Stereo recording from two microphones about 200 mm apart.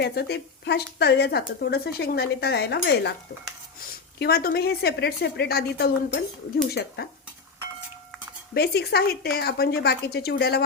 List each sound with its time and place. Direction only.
0.0 s speech: 55° left (ahead or behind)
4.2 s a woman's voice: 50° left (ahead or behind)
8.5 s a woman's voice: 55° left (ahead or behind)